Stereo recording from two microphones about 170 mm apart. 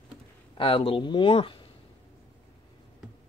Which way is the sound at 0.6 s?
30° left (ahead or behind).